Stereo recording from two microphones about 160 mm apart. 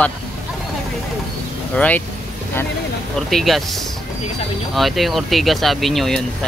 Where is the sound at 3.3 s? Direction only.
Centre (ahead or behind).